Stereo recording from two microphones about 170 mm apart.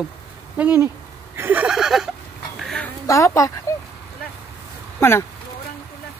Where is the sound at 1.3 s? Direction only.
10° right (ahead or behind); by 2.9 s 5° left (ahead or behind).